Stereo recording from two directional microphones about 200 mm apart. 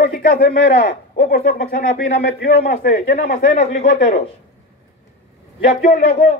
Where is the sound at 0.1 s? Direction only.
45° left (ahead or behind).